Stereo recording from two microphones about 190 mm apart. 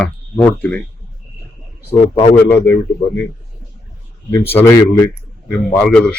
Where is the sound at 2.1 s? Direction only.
30° left (ahead or behind).